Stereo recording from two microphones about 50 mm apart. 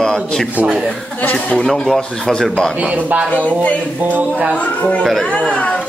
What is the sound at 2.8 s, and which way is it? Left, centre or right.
Speech, right.